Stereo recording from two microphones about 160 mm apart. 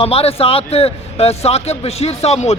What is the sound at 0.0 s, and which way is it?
Speech, 40° left (ahead or behind).